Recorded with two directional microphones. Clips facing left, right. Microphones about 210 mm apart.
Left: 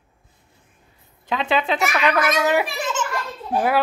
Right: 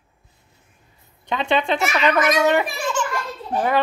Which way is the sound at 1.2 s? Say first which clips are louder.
Right 1 dB; centre (ahead or behind).